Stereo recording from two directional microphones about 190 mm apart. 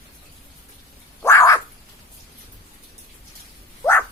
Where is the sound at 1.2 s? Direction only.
15° left (ahead or behind).